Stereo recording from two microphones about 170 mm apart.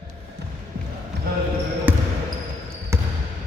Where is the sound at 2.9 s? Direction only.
15° right (ahead or behind).